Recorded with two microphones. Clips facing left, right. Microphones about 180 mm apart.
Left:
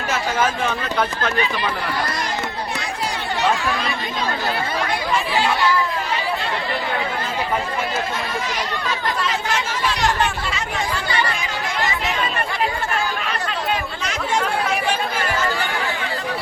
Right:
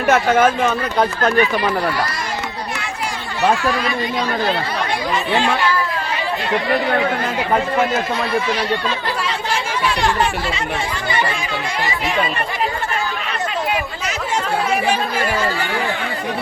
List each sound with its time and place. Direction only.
0.1 s speech: 60° right (ahead or behind); by 1.7 s 40° right (ahead or behind)